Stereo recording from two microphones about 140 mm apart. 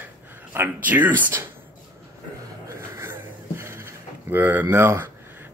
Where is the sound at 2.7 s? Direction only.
20° right (ahead or behind).